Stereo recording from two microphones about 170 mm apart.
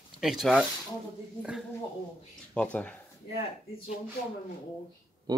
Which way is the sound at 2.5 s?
5° left (ahead or behind).